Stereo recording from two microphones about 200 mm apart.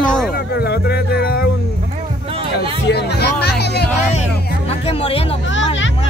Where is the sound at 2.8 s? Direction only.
55° left (ahead or behind).